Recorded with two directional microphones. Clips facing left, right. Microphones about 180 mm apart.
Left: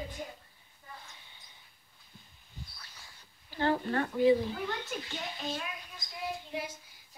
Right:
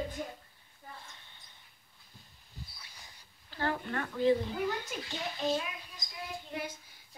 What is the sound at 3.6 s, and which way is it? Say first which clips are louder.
Speech: left 5 dB; 30° left (ahead or behind).